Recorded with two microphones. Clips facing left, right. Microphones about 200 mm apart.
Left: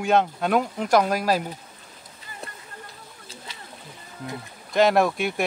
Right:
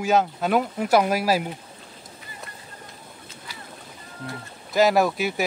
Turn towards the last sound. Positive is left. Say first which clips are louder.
# even
turn(degrees=0)  # may be behind; listen again after turning